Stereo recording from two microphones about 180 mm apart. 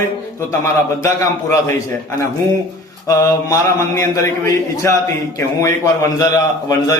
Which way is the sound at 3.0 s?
20° left (ahead or behind).